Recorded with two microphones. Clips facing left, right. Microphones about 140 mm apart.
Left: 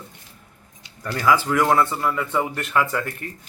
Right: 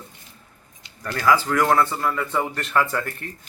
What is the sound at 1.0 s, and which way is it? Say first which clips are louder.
Speech: even; 10° left (ahead or behind).